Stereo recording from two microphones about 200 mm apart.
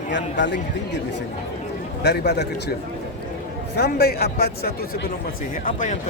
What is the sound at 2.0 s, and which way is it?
Speech, 55° left (ahead or behind).